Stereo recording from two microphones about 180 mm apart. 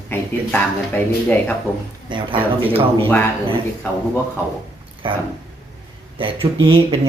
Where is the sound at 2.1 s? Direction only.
25° right (ahead or behind).